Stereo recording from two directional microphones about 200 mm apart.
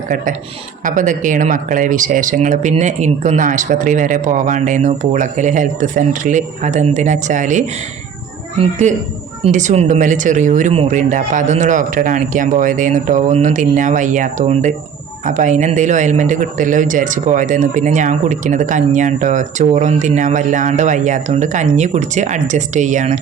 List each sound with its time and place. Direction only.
0.9 s speech: 40° right (ahead or behind)
8.8 s speech: 35° right (ahead or behind)